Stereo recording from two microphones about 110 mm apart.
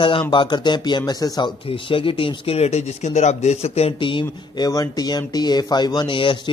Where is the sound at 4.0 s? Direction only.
50° left (ahead or behind).